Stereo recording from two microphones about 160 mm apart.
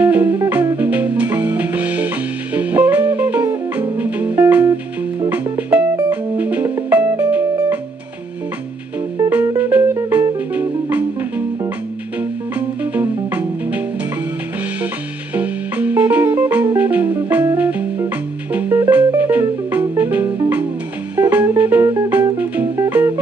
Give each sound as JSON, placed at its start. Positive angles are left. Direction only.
{"t": 0.0, "sound": "music", "side_deg": -10}
{"t": 9.3, "sound": "music", "side_deg": -15}
{"t": 12.5, "sound": "music", "side_deg": -10}
{"t": 15.3, "sound": "music", "side_deg": -10}